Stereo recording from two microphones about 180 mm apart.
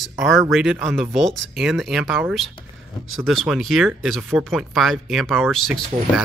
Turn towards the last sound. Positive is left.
turn(degrees=0)  # may be behind; listen again after turning